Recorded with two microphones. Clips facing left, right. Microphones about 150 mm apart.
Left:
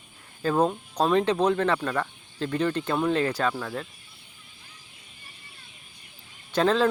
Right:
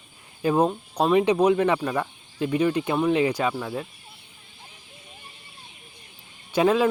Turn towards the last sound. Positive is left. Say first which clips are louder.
# right 2 dB
turn(degrees=-10)  # may be behind; listen again after turning